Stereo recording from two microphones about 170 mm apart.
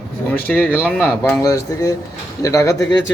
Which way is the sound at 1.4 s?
20° left (ahead or behind).